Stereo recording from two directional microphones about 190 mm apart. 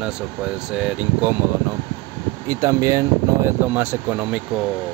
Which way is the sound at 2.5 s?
20° right (ahead or behind).